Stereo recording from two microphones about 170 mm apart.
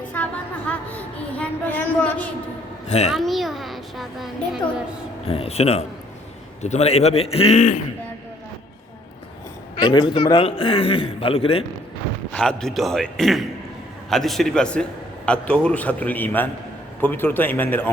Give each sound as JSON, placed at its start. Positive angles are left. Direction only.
{"t": 0.1, "sound": "a sound", "side_deg": 10}
{"t": 2.8, "sound": "a child's voice", "side_deg": 40}
{"t": 3.1, "sound": "a sound", "side_deg": 0}
{"t": 5.2, "sound": "a man's voice", "side_deg": 35}
{"t": 9.7, "sound": "a man's voice", "side_deg": 25}
{"t": 12.3, "sound": "a man's voice", "side_deg": 5}